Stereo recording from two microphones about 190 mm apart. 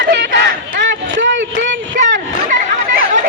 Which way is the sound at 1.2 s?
75° right (ahead or behind).